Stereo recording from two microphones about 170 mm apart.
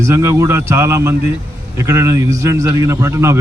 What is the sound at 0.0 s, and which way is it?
A man's voice, 15° right (ahead or behind).